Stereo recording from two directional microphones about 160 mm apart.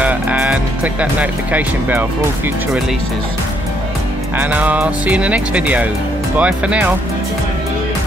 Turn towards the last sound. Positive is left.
turn(degrees=-10)  # may be behind; listen again after turning